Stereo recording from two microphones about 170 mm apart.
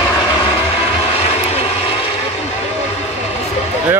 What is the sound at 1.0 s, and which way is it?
Vehicle, 35° left (ahead or behind).